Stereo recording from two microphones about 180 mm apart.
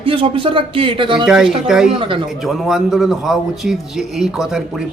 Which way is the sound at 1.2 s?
Centre (ahead or behind).